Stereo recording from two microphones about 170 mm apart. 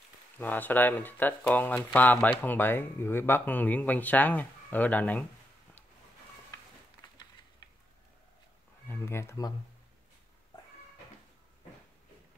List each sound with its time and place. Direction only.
0.4 s speech: 10° left (ahead or behind)
7.6 s a sound: 25° left (ahead or behind)
8.8 s speech: 15° left (ahead or behind)